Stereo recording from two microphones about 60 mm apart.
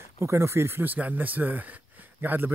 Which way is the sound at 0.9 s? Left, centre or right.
Right.